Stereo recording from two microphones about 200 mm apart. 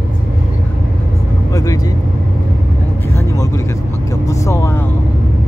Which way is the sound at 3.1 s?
15° left (ahead or behind).